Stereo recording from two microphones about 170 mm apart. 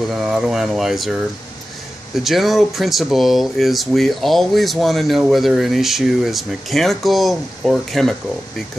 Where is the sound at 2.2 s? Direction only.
Centre (ahead or behind).